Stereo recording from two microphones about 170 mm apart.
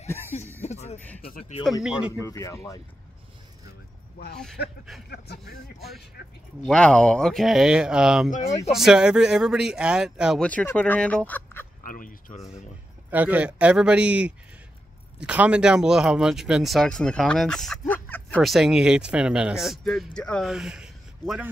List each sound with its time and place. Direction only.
0.3 s a sound: 40° left (ahead or behind)
0.9 s fowl: 10° left (ahead or behind)
1.5 s speech: 25° left (ahead or behind)
1.8 s speech: 5° right (ahead or behind)
2.1 s speech: 20° left (ahead or behind)
4.6 s speech: 70° left (ahead or behind)
6.2 s speech: 65° left (ahead or behind)
6.7 s speech: 5° left (ahead or behind)
10.4 s fowl: 10° left (ahead or behind)
11.8 s speech: 55° left (ahead or behind)
13.1 s a man's voice: 10° right (ahead or behind); by 18.4 s 10° left (ahead or behind)
18.4 s speech: centre (ahead or behind)